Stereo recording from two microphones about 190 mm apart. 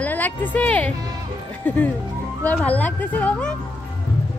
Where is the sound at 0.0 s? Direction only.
10° left (ahead or behind).